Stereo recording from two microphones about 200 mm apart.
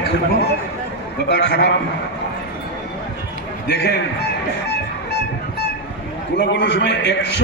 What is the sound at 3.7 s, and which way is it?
Speech, 60° left (ahead or behind).